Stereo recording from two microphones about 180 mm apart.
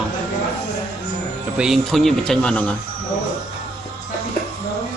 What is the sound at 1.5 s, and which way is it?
A man's voice, centre (ahead or behind).